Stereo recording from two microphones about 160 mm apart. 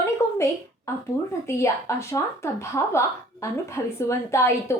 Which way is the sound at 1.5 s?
20° left (ahead or behind).